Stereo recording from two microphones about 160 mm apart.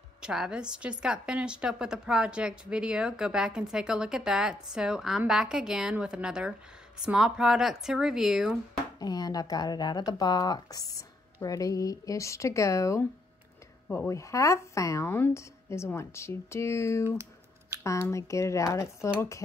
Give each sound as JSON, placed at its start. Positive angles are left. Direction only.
{"t": 0.2, "sound": "a woman's voice", "side_deg": -5}
{"t": 9.0, "sound": "speech", "side_deg": 25}